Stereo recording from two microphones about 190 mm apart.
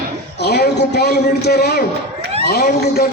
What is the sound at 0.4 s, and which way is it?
A man's voice, 60° left (ahead or behind).